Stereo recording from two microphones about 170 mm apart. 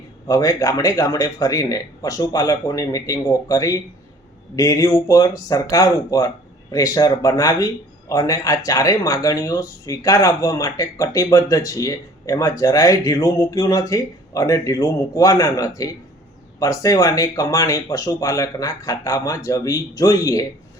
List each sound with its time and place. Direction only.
0.3 s speech: 20° left (ahead or behind)